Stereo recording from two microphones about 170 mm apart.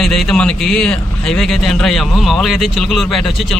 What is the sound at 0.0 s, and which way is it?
Speech, centre (ahead or behind).